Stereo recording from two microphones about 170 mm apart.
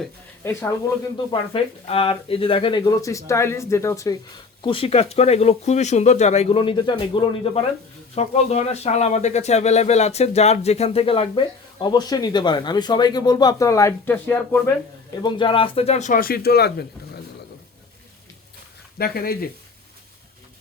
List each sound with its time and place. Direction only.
0.4 s speech: 15° left (ahead or behind)
4.6 s speech: 30° left (ahead or behind)
8.1 s speech: 40° left (ahead or behind); by 14.6 s 10° left (ahead or behind)
15.2 s speech: 30° left (ahead or behind); by 16.8 s 70° left (ahead or behind)
18.9 s speech: 65° left (ahead or behind)